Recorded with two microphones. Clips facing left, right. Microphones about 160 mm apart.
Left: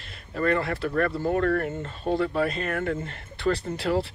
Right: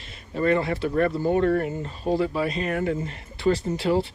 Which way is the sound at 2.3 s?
55° left (ahead or behind).